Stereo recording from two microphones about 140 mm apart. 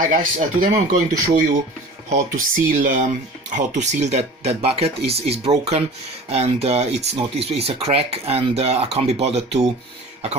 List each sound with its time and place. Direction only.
0.0 s speech: 85° right
2.0 s speech: 65° right (ahead or behind); by 9.7 s 50° right (ahead or behind)